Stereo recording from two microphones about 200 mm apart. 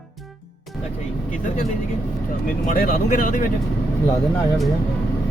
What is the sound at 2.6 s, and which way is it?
Speech, 45° left (ahead or behind).